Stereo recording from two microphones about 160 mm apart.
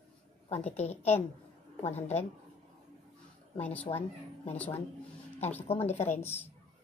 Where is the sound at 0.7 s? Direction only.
40° left (ahead or behind).